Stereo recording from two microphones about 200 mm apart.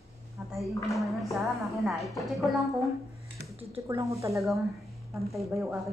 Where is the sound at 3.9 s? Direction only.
15° right (ahead or behind).